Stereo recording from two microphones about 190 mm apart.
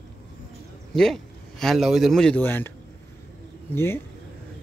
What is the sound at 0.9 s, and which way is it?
A man's voice, centre (ahead or behind).